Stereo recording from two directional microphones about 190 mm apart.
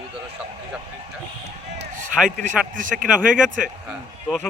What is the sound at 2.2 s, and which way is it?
Speech, 45° right (ahead or behind).